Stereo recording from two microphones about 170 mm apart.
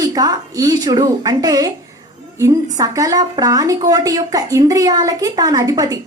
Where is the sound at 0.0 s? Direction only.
20° right (ahead or behind).